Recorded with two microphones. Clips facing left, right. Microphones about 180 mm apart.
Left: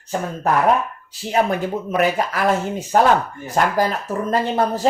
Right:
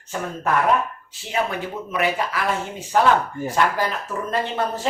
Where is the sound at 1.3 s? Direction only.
45° left (ahead or behind).